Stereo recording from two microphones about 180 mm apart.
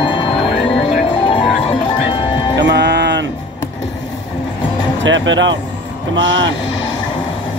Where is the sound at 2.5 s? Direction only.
75° right (ahead or behind).